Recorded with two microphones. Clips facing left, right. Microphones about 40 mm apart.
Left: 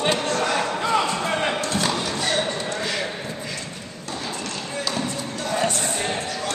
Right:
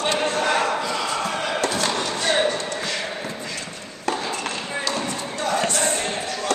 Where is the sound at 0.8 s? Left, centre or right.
Centre.